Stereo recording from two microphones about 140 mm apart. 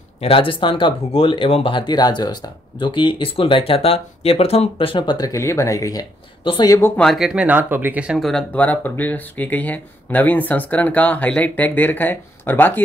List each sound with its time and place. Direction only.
0.2 s speech: 40° left (ahead or behind); by 6.0 s 25° left (ahead or behind)
6.4 s speech: 35° left (ahead or behind)
7.0 s speech: centre (ahead or behind)